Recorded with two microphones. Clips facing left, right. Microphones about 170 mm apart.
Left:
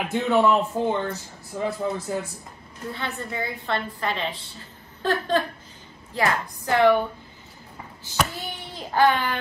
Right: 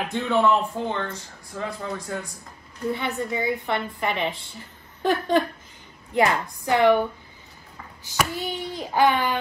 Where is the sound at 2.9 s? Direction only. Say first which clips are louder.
Right 3 dB; 15° right (ahead or behind).